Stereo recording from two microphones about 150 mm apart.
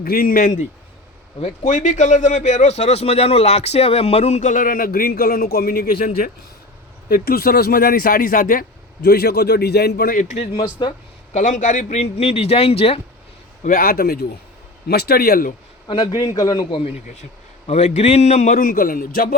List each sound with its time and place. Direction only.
0.0 s a man's voice: 80° left
7.1 s speech: 90° left
10.2 s speech: 45° left (ahead or behind)
11.3 s a man's voice: 55° left (ahead or behind); by 13.0 s 40° left (ahead or behind)
13.7 s a man's voice: 75° left (ahead or behind)
15.9 s a man's voice: 30° left (ahead or behind)
17.7 s a man's voice: 45° left (ahead or behind); by 19.4 s 80° left